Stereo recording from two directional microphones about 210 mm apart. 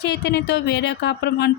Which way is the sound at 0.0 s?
55° left (ahead or behind).